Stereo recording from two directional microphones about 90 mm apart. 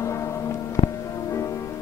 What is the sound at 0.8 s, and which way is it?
Music, 90° left.